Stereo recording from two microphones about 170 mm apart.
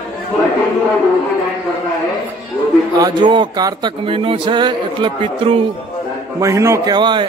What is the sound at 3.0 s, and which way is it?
Speech, 25° right (ahead or behind).